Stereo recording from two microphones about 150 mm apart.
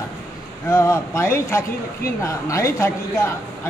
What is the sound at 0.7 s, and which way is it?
Speech, 20° left (ahead or behind).